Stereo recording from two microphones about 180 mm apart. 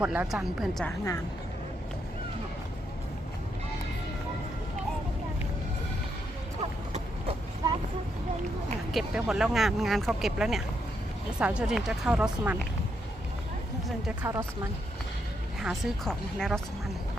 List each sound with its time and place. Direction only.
0.0 s speech: 5° right (ahead or behind)
6.6 s horse: 30° right (ahead or behind)
8.9 s speech: centre (ahead or behind)
14.3 s speech: 15° right (ahead or behind)
15.6 s speech: centre (ahead or behind)